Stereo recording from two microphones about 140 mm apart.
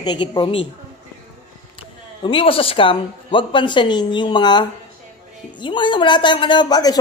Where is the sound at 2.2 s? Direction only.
40° left (ahead or behind).